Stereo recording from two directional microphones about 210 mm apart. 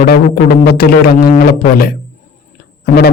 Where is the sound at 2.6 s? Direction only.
45° left (ahead or behind).